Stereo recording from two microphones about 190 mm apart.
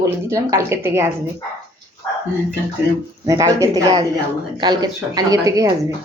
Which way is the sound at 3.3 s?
15° right (ahead or behind).